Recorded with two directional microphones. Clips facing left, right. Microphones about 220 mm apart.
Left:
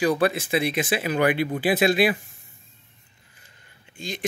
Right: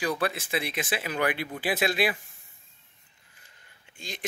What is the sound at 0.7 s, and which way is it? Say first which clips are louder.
Speech: left 7 dB; 10° left (ahead or behind).